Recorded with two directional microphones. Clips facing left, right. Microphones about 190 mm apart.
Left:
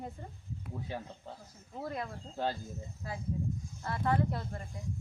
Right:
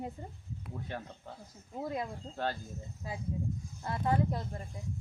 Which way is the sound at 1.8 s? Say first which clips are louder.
Right 2 dB; 15° right (ahead or behind).